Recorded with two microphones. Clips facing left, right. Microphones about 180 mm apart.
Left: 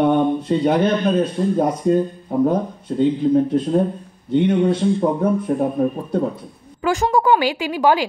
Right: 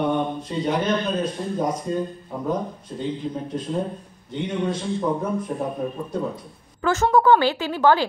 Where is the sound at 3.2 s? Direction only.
65° left (ahead or behind).